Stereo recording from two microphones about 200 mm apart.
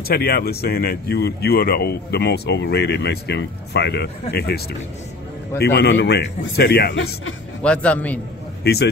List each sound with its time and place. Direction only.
0.1 s speech: 50° left (ahead or behind)
5.6 s a man's voice: 55° left (ahead or behind)
7.6 s a man's voice: 5° left (ahead or behind)